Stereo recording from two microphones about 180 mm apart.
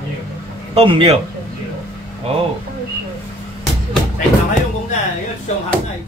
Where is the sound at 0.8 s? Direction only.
30° right (ahead or behind).